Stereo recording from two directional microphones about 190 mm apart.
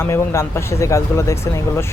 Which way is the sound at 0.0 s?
15° left (ahead or behind).